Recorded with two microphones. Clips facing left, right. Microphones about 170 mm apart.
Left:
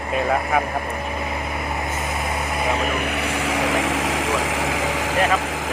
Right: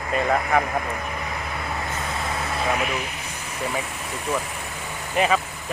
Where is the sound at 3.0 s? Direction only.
70° left (ahead or behind).